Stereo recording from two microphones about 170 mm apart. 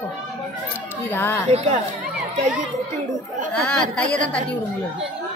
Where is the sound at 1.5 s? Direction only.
40° right (ahead or behind).